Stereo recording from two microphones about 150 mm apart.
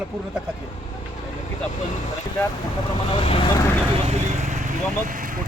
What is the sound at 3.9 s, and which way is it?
Vehicle, 45° right (ahead or behind).